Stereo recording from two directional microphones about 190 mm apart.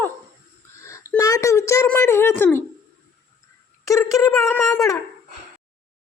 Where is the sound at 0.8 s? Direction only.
15° left (ahead or behind).